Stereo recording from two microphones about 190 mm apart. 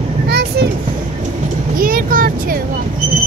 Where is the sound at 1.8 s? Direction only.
50° right (ahead or behind).